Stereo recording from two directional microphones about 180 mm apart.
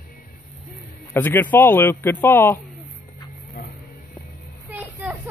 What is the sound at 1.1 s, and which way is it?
Speech, 10° left (ahead or behind).